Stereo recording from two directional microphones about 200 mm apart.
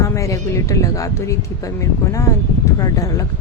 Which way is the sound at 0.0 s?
15° left (ahead or behind).